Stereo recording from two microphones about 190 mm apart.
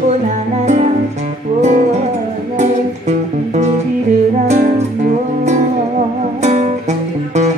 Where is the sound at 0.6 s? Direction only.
40° right (ahead or behind).